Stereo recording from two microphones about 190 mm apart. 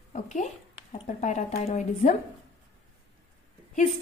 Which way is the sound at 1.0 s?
40° left (ahead or behind).